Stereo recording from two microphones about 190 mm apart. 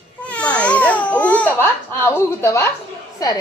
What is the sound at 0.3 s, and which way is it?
Babbling, 5° left (ahead or behind).